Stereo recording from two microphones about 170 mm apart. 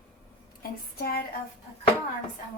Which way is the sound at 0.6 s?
60° left (ahead or behind).